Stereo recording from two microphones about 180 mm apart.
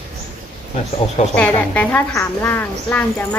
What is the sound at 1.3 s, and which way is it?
A woman's voice, 5° left (ahead or behind).